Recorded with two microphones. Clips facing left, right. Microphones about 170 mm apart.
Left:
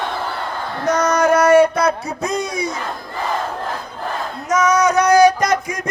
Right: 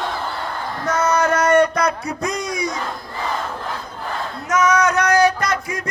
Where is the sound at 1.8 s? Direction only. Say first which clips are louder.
Left 2 dB; 25° left (ahead or behind).